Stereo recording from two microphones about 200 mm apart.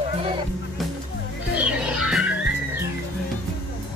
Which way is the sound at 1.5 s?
5° right (ahead or behind).